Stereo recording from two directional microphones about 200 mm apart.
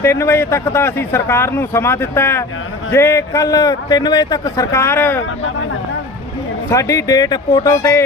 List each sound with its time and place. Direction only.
0.0 s speech: 15° left (ahead or behind)
6.7 s speech: 15° left (ahead or behind)